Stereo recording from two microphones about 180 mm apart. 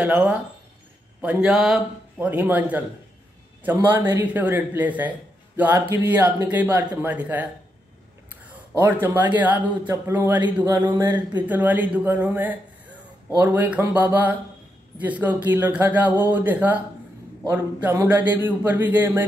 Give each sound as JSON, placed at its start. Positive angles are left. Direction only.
{"t": 0.0, "sound": "speech", "side_deg": -5}
{"t": 8.7, "sound": "speech", "side_deg": -10}
{"t": 10.4, "sound": "speech", "side_deg": -25}
{"t": 11.4, "sound": "speech", "side_deg": -10}